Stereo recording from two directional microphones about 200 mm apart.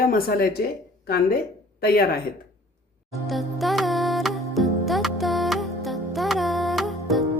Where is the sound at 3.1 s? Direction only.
Centre (ahead or behind).